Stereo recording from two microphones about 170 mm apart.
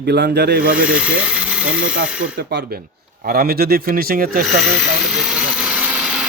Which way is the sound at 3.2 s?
60° right (ahead or behind).